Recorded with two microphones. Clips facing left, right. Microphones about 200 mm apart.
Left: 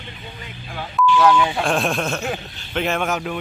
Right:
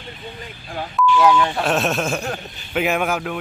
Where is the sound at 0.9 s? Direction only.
5° right (ahead or behind).